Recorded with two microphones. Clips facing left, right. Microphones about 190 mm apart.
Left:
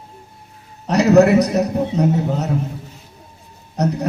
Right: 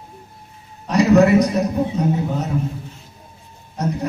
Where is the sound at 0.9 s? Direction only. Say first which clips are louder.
Left 1 dB; 65° left (ahead or behind).